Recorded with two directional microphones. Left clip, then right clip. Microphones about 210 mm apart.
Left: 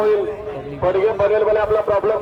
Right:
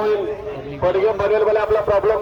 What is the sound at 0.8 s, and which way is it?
A man's voice, 55° right (ahead or behind).